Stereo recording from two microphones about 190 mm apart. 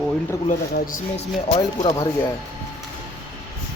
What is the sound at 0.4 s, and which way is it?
Speech, 40° left (ahead or behind).